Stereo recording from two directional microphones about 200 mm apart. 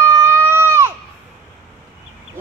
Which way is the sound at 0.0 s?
10° right (ahead or behind).